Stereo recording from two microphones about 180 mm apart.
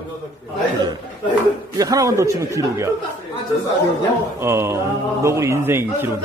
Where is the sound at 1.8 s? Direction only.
20° right (ahead or behind).